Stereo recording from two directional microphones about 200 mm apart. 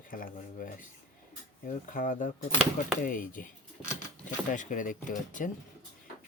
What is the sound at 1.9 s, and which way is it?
Speech, 40° left (ahead or behind).